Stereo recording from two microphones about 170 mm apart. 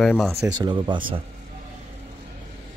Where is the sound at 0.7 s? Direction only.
25° right (ahead or behind).